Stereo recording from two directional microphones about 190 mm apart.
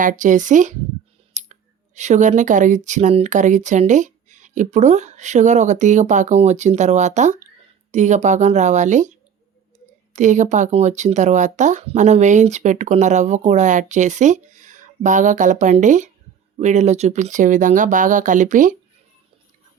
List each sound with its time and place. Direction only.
0.0 s speech: 40° right (ahead or behind)
1.3 s clicking: 35° right (ahead or behind)
2.0 s speech: 40° right (ahead or behind)